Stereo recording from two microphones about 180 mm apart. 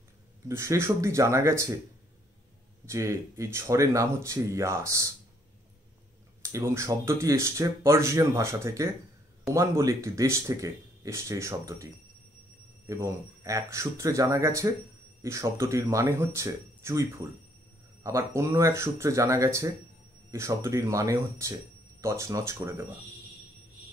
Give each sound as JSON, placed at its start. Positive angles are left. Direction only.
{"t": 0.5, "sound": "speech", "side_deg": -15}
{"t": 2.9, "sound": "speech", "side_deg": -15}
{"t": 6.4, "sound": "speech", "side_deg": -15}